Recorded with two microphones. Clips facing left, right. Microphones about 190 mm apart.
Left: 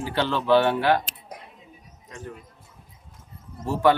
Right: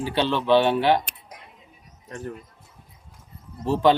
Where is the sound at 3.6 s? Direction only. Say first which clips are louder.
Right 1 dB; 20° right (ahead or behind).